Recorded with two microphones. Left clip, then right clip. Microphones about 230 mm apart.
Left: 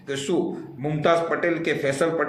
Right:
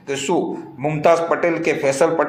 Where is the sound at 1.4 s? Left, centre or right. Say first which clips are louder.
Right 5 dB; centre.